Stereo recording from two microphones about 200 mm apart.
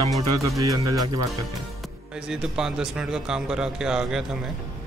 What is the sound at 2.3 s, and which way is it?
Speech, 5° right (ahead or behind).